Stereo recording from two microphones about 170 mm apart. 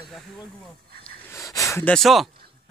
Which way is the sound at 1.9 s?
Centre (ahead or behind).